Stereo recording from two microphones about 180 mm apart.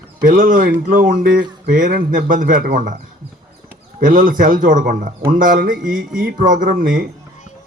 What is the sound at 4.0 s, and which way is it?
A man's voice, 50° right (ahead or behind).